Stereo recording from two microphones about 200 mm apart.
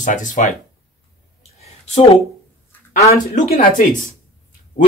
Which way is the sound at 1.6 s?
30° left (ahead or behind).